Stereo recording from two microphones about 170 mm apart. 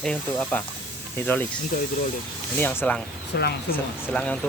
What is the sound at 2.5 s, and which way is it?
Speech, 10° left (ahead or behind).